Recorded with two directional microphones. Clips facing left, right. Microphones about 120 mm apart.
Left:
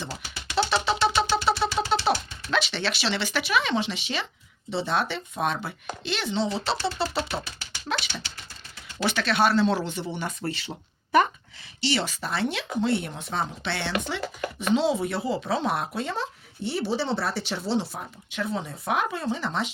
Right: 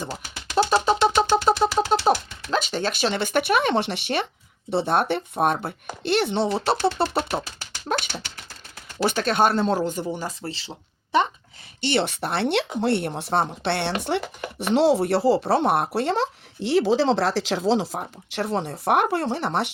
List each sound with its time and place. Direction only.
0.0 s a sound: 45° right (ahead or behind); by 4.3 s 60° right (ahead or behind)
4.7 s speech: 55° right (ahead or behind)
10.2 s speech: 30° right (ahead or behind)
11.8 s speech: 55° right (ahead or behind); by 15.4 s 75° right (ahead or behind)
15.4 s speech: 60° right (ahead or behind); by 17.8 s 90° right
18.3 s speech: 75° right (ahead or behind)